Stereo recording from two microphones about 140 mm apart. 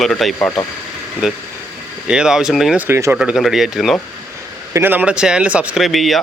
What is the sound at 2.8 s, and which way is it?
Speech, 20° right (ahead or behind).